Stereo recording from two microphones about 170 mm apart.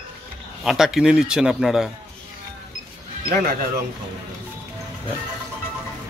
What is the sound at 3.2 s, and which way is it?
Speech, 60° right (ahead or behind).